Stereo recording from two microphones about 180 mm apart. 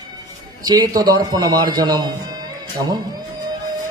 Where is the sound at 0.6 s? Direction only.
20° right (ahead or behind).